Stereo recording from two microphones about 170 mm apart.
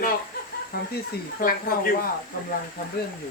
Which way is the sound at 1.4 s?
55° left (ahead or behind).